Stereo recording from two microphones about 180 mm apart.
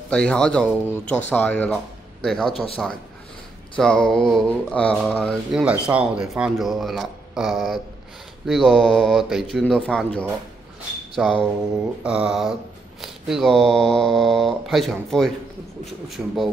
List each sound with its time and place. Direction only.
0.1 s speech: 5° left (ahead or behind)
2.5 s a man's voice: 30° left (ahead or behind)
3.7 s speech: 5° left (ahead or behind)